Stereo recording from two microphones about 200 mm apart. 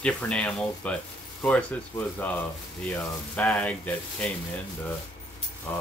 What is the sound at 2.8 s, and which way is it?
Speech, 5° left (ahead or behind).